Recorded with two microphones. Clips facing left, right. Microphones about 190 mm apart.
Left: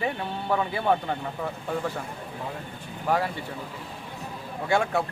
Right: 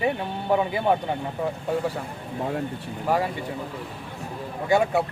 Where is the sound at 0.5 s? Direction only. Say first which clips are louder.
Right 3 dB; 15° right (ahead or behind).